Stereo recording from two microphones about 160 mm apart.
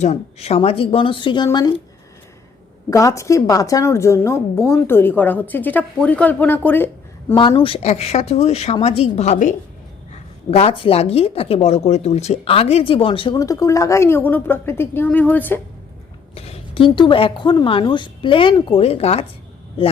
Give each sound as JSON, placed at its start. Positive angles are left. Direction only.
{"t": 0.0, "sound": "speech", "side_deg": 40}
{"t": 2.9, "sound": "a woman's voice", "side_deg": 20}
{"t": 7.6, "sound": "speech", "side_deg": 40}
{"t": 13.4, "sound": "a woman's voice", "side_deg": 20}
{"t": 16.3, "sound": "speech", "side_deg": 35}